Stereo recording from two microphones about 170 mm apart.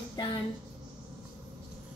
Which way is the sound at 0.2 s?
25° left (ahead or behind).